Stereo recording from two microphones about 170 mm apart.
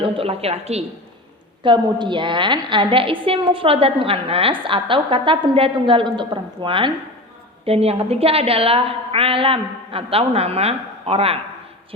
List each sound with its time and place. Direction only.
0.0 s a woman's voice: 35° right (ahead or behind)
1.6 s a woman's voice: 30° right (ahead or behind)